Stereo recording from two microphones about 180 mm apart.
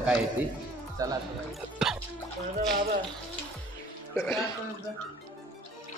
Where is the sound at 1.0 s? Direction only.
20° right (ahead or behind).